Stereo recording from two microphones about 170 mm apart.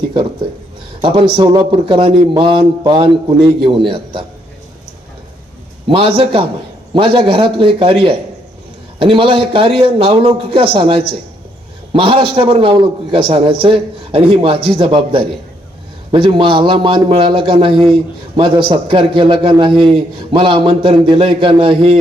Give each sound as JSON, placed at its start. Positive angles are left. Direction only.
{"t": 1.0, "sound": "a man's voice", "side_deg": -25}
{"t": 5.9, "sound": "a man's voice", "side_deg": -30}